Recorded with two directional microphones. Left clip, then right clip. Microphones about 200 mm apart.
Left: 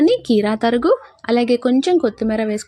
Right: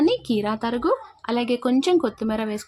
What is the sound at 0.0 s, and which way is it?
Speech, 15° left (ahead or behind).